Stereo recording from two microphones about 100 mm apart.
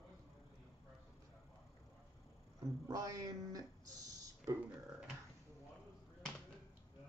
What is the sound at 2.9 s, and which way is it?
Speech, 35° right (ahead or behind).